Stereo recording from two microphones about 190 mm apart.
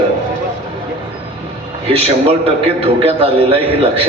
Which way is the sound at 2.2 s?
30° right (ahead or behind).